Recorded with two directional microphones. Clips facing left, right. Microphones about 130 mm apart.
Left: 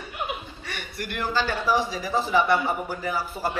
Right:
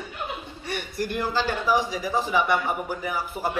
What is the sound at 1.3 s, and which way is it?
A man's voice, 15° right (ahead or behind).